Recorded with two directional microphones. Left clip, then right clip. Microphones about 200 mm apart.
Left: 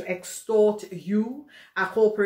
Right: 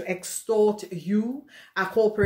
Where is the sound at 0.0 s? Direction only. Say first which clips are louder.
Right 1 dB; 55° right (ahead or behind).